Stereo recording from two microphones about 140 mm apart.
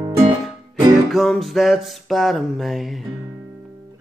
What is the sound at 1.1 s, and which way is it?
Music, centre (ahead or behind).